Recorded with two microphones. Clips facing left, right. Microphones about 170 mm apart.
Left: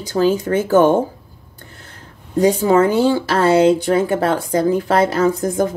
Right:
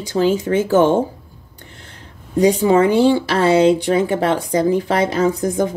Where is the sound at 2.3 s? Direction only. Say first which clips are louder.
Even; 20° right (ahead or behind).